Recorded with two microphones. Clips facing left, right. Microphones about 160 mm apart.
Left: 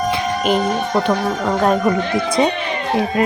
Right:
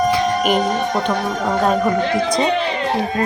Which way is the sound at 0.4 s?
Centre (ahead or behind).